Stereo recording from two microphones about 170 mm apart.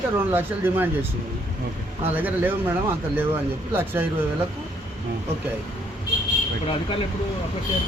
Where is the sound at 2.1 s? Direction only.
10° right (ahead or behind).